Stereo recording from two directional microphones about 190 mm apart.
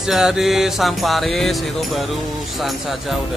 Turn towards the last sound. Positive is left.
turn(degrees=0)  # may be behind; listen again after turning